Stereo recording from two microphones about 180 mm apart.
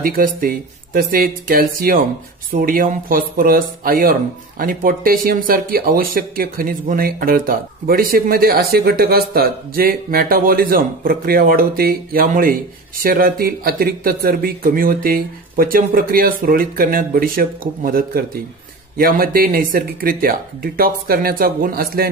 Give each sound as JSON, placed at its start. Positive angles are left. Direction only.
{"t": 0.0, "sound": "speech", "side_deg": -50}